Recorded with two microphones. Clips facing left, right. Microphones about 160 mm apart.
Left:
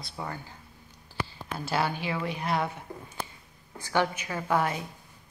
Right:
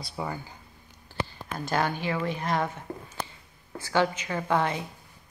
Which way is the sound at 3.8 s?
15° left (ahead or behind).